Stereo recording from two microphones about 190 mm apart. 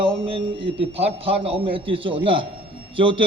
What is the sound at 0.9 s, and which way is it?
A man's voice, 30° right (ahead or behind).